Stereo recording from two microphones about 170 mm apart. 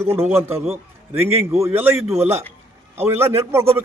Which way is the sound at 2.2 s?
40° right (ahead or behind).